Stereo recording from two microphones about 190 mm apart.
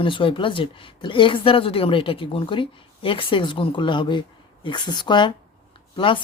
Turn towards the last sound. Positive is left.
turn(degrees=25)  # may be behind; listen again after turning